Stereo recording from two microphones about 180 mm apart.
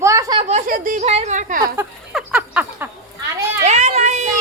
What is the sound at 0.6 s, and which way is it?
Speech, 50° right (ahead or behind).